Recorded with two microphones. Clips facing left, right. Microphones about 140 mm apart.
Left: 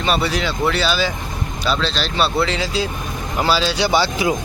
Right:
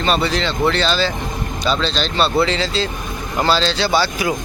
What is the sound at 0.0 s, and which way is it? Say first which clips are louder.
Speech: right 1 dB; 10° left (ahead or behind).